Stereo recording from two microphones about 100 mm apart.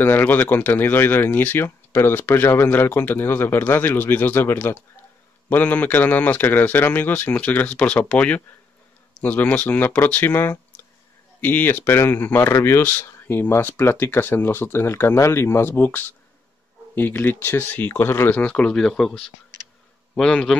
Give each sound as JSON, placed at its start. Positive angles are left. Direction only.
{"t": 0.0, "sound": "a man's voice", "side_deg": 20}